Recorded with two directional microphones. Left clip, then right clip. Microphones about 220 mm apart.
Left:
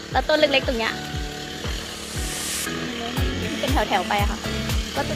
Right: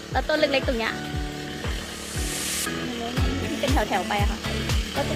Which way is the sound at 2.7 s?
Centre (ahead or behind).